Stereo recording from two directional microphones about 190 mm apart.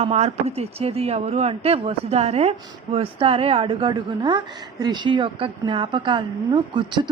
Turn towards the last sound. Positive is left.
turn(degrees=-25)  # may be behind; listen again after turning